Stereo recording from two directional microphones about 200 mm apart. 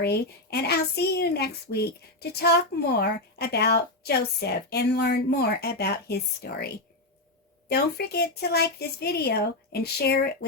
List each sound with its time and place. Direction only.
0.0 s a woman's voice: 55° left (ahead or behind)
7.7 s a woman's voice: 55° left (ahead or behind)